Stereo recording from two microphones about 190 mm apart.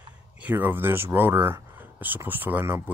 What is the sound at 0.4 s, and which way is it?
Speech, 10° right (ahead or behind).